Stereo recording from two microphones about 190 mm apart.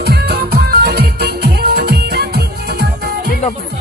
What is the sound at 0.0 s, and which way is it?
Music, 55° right (ahead or behind).